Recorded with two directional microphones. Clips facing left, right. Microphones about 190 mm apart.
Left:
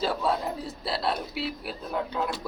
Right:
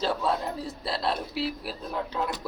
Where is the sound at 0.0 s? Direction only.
5° left (ahead or behind).